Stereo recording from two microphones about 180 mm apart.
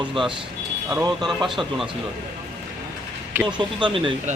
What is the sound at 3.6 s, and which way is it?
Speech, 25° right (ahead or behind).